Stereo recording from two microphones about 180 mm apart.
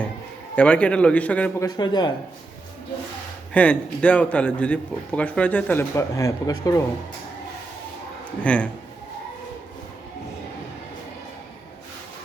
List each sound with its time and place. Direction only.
0.5 s a man's voice: 5° left (ahead or behind)
1.6 s speech: 25° left (ahead or behind)
3.5 s a man's voice: 5° left (ahead or behind)
8.4 s a man's voice: 5° left (ahead or behind)